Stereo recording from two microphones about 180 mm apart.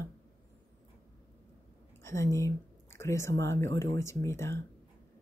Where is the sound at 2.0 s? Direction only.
15° left (ahead or behind).